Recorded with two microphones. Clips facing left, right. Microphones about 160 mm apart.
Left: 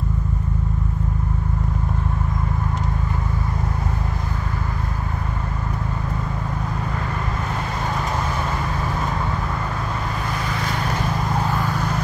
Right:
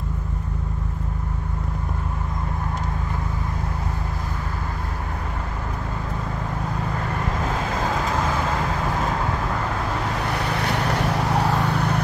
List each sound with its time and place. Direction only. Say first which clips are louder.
10.3 s vehicle: right 2 dB; 65° right (ahead or behind)